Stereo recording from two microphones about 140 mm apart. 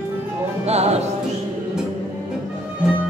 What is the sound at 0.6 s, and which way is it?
Music, 50° right (ahead or behind).